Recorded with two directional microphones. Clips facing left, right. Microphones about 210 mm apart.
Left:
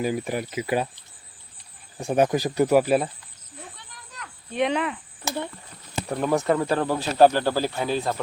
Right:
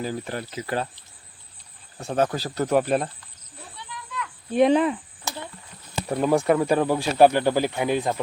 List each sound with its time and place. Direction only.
0.0 s speech: 10° left (ahead or behind)
2.0 s speech: 15° left (ahead or behind)
3.8 s a sound: 40° left (ahead or behind)
4.5 s speech: 35° right (ahead or behind)
6.1 s speech: 10° right (ahead or behind)